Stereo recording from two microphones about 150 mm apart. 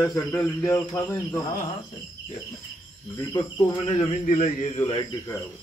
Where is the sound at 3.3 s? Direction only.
25° left (ahead or behind).